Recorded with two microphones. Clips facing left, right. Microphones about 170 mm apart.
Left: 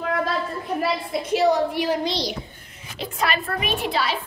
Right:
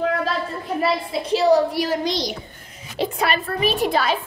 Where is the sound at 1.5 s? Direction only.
40° right (ahead or behind).